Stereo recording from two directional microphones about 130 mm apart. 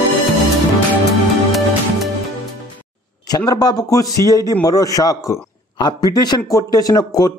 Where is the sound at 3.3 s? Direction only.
30° left (ahead or behind).